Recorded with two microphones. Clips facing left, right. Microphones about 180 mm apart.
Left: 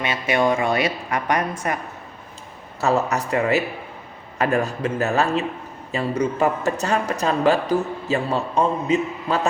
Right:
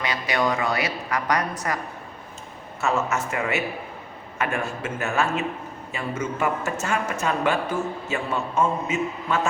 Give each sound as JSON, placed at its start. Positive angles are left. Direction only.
{"t": 0.0, "sound": "a woman's voice", "side_deg": 25}
{"t": 2.8, "sound": "a man's voice", "side_deg": 35}